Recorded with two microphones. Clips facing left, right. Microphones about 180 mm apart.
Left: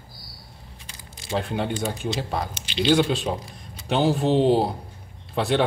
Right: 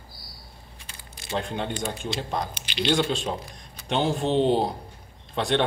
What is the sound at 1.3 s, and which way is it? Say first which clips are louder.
Speech: left 3 dB; 5° left (ahead or behind).